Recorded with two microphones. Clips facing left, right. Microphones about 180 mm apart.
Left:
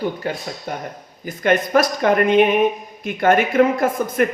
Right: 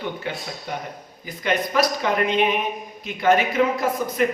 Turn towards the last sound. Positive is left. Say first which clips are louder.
# left 4 dB
turn(degrees=50)  # may be behind; listen again after turning